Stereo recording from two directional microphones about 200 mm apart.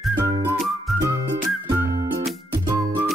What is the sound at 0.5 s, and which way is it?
Music, centre (ahead or behind).